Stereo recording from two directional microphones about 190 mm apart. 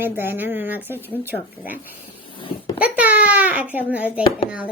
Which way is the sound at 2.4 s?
25° left (ahead or behind).